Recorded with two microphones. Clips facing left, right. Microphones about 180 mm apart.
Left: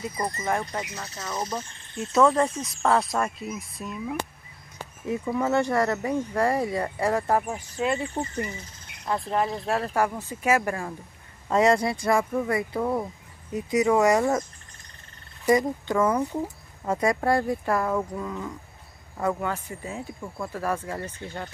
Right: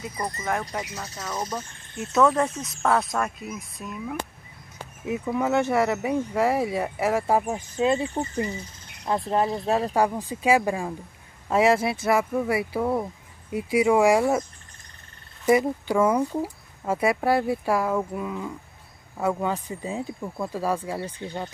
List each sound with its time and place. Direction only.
0.5 s speech: centre (ahead or behind)
7.4 s speech: 25° right (ahead or behind)
15.4 s speech: 10° right (ahead or behind)